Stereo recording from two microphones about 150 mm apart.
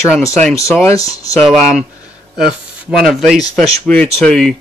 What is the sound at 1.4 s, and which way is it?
Speech, centre (ahead or behind).